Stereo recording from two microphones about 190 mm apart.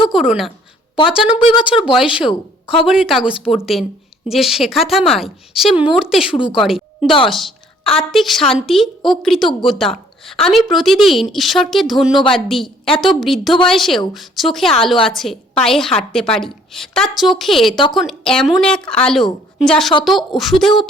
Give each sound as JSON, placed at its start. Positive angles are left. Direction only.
{"t": 0.1, "sound": "a woman's voice", "side_deg": 0}
{"t": 1.4, "sound": "speech", "side_deg": 25}
{"t": 2.0, "sound": "a woman's voice", "side_deg": -5}
{"t": 6.3, "sound": "speech", "side_deg": 25}
{"t": 6.6, "sound": "a woman's voice", "side_deg": 0}